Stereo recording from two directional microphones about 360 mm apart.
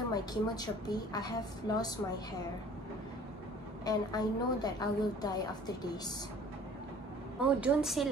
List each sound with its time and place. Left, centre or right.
0.1 s a woman's voice: centre
3.8 s a woman's voice: centre
7.4 s a woman's voice: centre